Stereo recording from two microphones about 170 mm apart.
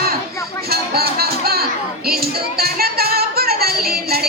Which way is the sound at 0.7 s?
65° right (ahead or behind).